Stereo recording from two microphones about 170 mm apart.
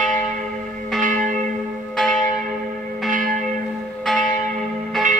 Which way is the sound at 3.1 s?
50° right (ahead or behind).